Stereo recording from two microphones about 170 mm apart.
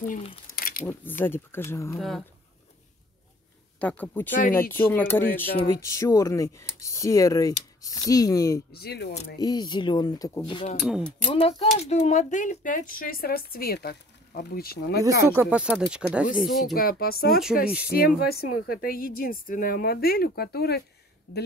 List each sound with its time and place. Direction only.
0.5 s a sound: 55° left (ahead or behind)
1.2 s speech: 15° left (ahead or behind)
2.0 s speech: centre (ahead or behind)
3.8 s speech: 10° left (ahead or behind)
8.7 s speech: 70° left (ahead or behind)
9.4 s speech: 25° left (ahead or behind)
10.8 s speech: centre (ahead or behind)
11.2 s speech: 30° left (ahead or behind); by 15.0 s 65° left (ahead or behind)
15.0 s speech: 20° right (ahead or behind)
15.5 s speech: 5° right (ahead or behind)
16.7 s a woman's voice: 60° left (ahead or behind)
17.6 s speech: 5° right (ahead or behind)
17.9 s a woman's voice: 60° left (ahead or behind)